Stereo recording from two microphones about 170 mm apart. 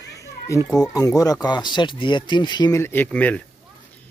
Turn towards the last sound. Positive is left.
turn(degrees=10)  # may be behind; listen again after turning